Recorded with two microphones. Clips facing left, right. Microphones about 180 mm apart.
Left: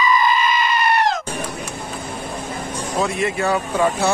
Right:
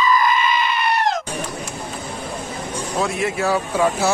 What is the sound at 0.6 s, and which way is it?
Goat, 45° left (ahead or behind).